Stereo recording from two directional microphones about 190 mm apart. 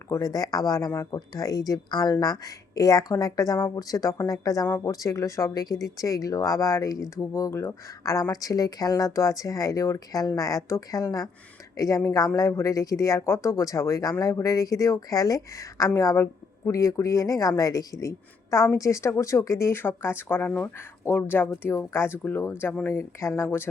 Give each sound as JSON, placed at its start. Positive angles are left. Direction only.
{"t": 0.1, "sound": "speech", "side_deg": 20}